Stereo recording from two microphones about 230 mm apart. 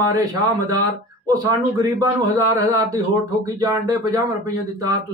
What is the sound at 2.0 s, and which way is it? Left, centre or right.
Speech, centre.